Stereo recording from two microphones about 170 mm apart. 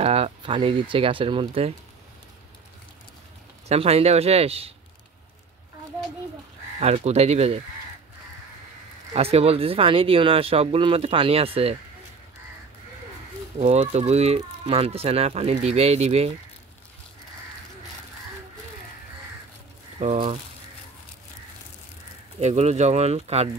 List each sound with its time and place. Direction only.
0.0 s speech: 35° right (ahead or behind)
3.6 s speech: 35° right (ahead or behind)
6.8 s speech: 40° right (ahead or behind)
9.1 s speech: 35° right (ahead or behind)
13.6 s speech: 40° right (ahead or behind)
20.0 s speech: 45° right (ahead or behind)
22.4 s speech: 40° right (ahead or behind)